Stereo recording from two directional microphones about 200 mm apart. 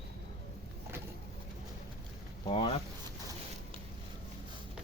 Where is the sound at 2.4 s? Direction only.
25° left (ahead or behind).